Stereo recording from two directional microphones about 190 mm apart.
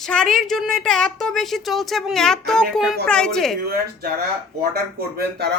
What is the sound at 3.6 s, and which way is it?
Speech, 50° right (ahead or behind).